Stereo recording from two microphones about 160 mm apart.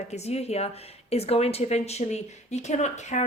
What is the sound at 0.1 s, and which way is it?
Speech, 40° left (ahead or behind).